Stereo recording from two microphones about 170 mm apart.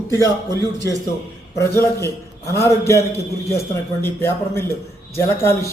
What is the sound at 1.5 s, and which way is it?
A man's voice, 15° left (ahead or behind).